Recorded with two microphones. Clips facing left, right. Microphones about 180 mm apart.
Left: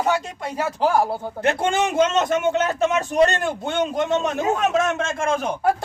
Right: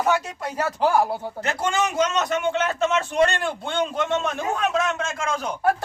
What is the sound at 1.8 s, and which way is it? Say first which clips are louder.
Speech: left 3 dB; 25° left (ahead or behind).